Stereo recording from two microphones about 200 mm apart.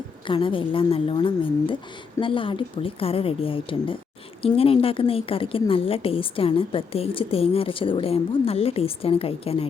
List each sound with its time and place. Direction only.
0.3 s a woman's voice: 25° left (ahead or behind)